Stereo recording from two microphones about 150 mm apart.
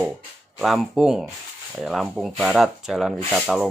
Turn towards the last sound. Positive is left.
turn(degrees=0)  # may be behind; listen again after turning